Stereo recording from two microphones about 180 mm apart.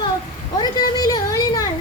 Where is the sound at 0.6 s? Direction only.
20° left (ahead or behind).